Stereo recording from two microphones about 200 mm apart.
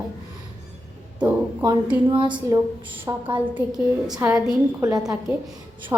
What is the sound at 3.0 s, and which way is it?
Speech, 25° right (ahead or behind).